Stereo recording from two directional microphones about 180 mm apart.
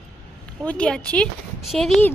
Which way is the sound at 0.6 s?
5° left (ahead or behind).